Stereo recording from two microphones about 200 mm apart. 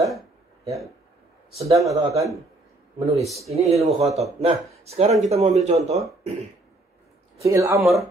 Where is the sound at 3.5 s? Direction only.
30° right (ahead or behind).